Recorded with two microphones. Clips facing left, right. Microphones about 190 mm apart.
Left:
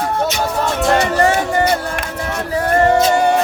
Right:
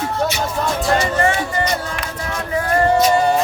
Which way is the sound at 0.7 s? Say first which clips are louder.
Left 4 dB; 65° left (ahead or behind).